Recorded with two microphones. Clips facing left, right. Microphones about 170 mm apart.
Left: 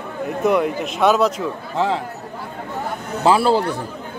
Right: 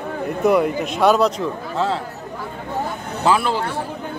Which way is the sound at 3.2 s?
30° left (ahead or behind).